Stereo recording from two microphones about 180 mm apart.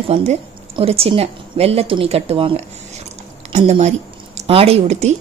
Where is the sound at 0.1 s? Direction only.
35° right (ahead or behind).